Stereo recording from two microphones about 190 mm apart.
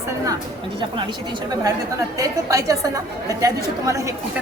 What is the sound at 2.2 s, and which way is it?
A woman's voice, 15° right (ahead or behind).